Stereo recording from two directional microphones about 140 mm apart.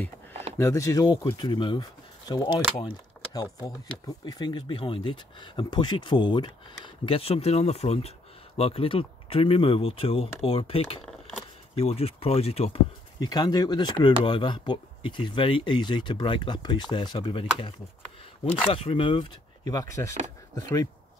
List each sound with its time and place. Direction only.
0.6 s speech: 20° left (ahead or behind)
4.3 s speech: 30° left (ahead or behind)
11.0 s a sound: 5° left (ahead or behind)
11.7 s speech: 45° left (ahead or behind)
13.2 s speech: 30° left (ahead or behind)